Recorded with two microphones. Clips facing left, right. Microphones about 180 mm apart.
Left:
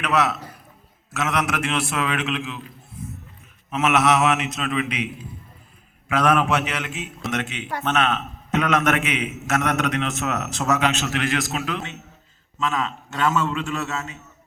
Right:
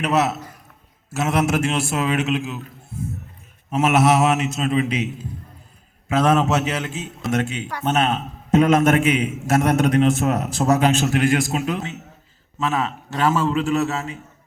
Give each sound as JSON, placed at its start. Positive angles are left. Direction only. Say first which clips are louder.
{"t": 0.0, "sound": "a man's voice", "louder": "right 2 dB", "side_deg": -30}
{"t": 2.2, "sound": "a man's voice", "louder": "right 4 dB", "side_deg": -45}
{"t": 3.7, "sound": "a man's voice", "louder": "right 3 dB", "side_deg": -30}
{"t": 7.2, "sound": "speech", "louder": "right 5 dB", "side_deg": 0}
{"t": 7.9, "sound": "a man's voice", "louder": "right 3 dB", "side_deg": -30}